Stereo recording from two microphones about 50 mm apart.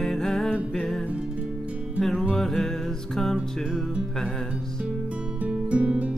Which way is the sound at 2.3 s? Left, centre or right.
Centre.